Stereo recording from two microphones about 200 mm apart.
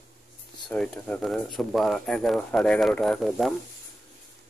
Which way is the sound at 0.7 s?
5° left (ahead or behind).